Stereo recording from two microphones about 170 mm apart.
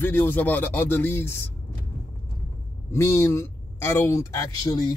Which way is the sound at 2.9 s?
15° left (ahead or behind).